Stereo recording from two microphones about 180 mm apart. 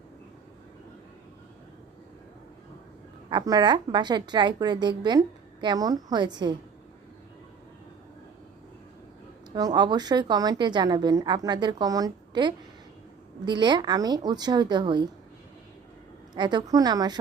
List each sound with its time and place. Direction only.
3.2 s a woman's voice: 25° right (ahead or behind)
9.6 s a woman's voice: 20° right (ahead or behind)
16.3 s a woman's voice: 25° right (ahead or behind)